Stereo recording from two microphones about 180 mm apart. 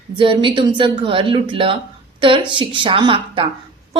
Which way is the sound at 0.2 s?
30° right (ahead or behind).